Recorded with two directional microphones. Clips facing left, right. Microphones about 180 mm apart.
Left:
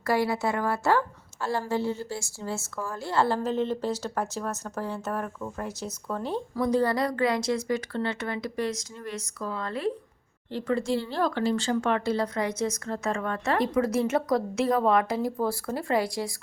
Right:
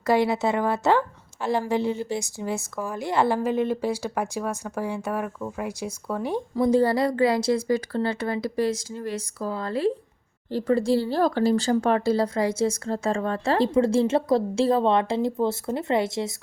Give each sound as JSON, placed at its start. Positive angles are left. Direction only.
{"t": 0.0, "sound": "a woman's voice", "side_deg": -20}
{"t": 6.6, "sound": "a woman's voice", "side_deg": -25}